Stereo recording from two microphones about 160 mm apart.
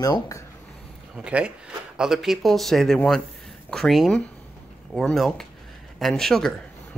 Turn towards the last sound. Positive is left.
turn(degrees=0)  # may be behind; listen again after turning